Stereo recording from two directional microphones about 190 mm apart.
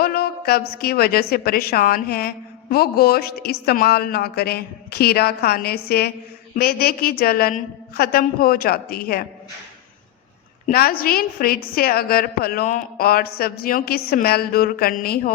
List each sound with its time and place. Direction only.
0.0 s a sound: 55° left (ahead or behind)
0.8 s a woman's voice: 55° left (ahead or behind)
10.7 s a woman's voice: 50° left (ahead or behind)